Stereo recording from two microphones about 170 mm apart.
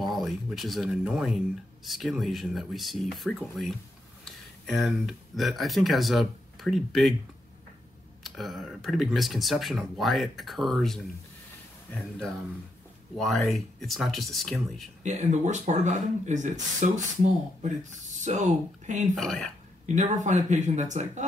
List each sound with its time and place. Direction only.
0.0 s speech: centre (ahead or behind)
8.2 s speech: centre (ahead or behind)
15.0 s speech: 45° right (ahead or behind)
19.1 s speech: centre (ahead or behind)
19.9 s speech: 45° right (ahead or behind)